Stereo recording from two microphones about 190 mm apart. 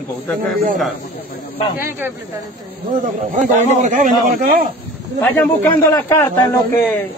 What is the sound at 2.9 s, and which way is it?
A man's voice, 45° right (ahead or behind).